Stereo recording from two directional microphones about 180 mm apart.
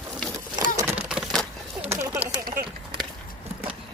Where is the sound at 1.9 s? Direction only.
15° right (ahead or behind).